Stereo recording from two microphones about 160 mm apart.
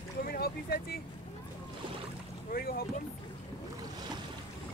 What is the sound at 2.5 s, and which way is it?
Boat, 70° left (ahead or behind).